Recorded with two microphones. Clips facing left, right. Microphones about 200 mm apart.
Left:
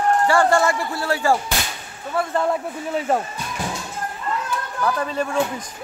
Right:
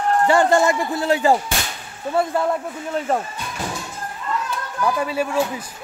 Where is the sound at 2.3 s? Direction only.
5° left (ahead or behind).